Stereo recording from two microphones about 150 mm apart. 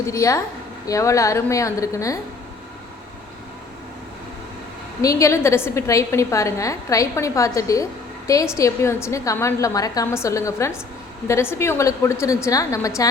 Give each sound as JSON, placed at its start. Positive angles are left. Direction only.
{"t": 0.1, "sound": "a woman's voice", "side_deg": 20}
{"t": 5.0, "sound": "a woman's voice", "side_deg": 20}